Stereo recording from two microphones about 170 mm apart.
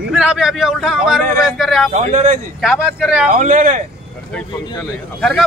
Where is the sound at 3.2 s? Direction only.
50° right (ahead or behind).